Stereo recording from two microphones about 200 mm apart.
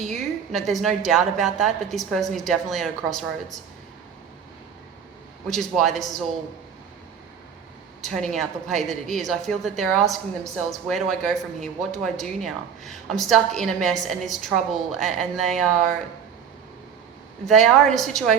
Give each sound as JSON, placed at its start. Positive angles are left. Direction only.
{"t": 0.1, "sound": "a woman's voice", "side_deg": 0}
{"t": 5.5, "sound": "a woman's voice", "side_deg": 0}
{"t": 8.0, "sound": "a woman's voice", "side_deg": 0}
{"t": 17.4, "sound": "a woman's voice", "side_deg": 0}